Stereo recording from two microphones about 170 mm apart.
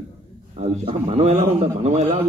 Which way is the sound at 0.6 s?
35° right (ahead or behind).